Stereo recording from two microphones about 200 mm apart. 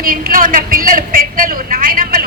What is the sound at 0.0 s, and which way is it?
A woman's voice, 45° right (ahead or behind).